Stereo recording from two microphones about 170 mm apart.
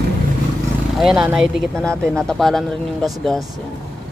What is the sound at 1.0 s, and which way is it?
Speech, 5° right (ahead or behind).